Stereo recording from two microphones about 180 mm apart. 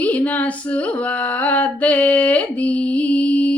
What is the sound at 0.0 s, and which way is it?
Female singing, 10° left (ahead or behind).